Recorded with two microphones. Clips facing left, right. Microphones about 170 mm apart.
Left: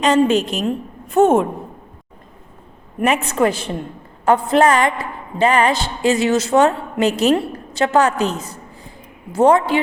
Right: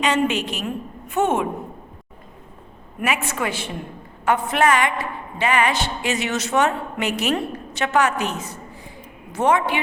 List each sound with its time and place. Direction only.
0.0 s a woman's voice: 45° left (ahead or behind)
3.0 s a woman's voice: 35° left (ahead or behind)